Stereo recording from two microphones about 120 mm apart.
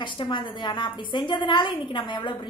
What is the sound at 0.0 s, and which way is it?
A woman's voice, 45° left (ahead or behind).